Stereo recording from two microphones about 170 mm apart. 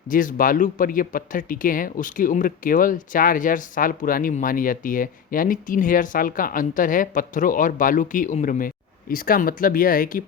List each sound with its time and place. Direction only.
0.1 s speech: 50° left (ahead or behind)